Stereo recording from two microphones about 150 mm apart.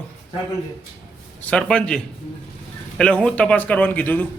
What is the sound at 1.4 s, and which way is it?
Speech, 5° left (ahead or behind).